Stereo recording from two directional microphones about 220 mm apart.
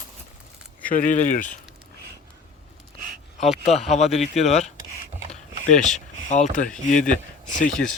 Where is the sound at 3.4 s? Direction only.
Centre (ahead or behind).